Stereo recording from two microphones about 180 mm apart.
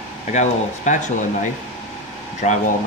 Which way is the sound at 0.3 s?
40° left (ahead or behind).